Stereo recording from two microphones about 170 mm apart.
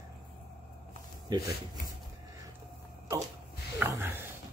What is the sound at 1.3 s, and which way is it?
Speech, 25° right (ahead or behind).